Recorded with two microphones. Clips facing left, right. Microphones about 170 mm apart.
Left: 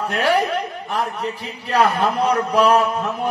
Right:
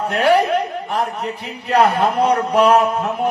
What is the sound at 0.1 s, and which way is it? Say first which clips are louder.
A man's voice: right 5 dB; 35° right (ahead or behind).